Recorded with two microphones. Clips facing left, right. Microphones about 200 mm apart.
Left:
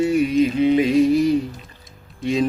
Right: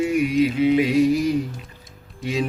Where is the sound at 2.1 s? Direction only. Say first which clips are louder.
Left 5 dB; 5° right (ahead or behind).